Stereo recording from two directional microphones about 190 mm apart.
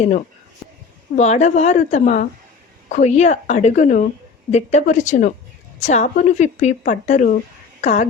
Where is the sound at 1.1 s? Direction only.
35° left (ahead or behind).